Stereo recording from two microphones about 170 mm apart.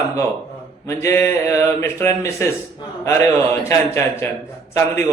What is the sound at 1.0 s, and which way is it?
A man's voice, 15° left (ahead or behind).